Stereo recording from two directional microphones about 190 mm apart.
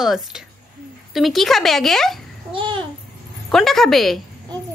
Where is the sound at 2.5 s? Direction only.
25° right (ahead or behind).